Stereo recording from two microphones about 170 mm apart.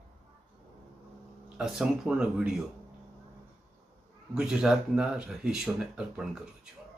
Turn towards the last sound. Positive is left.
turn(degrees=-5)  # may be behind; listen again after turning